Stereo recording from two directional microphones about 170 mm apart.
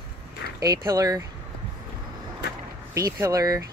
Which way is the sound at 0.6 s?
20° right (ahead or behind).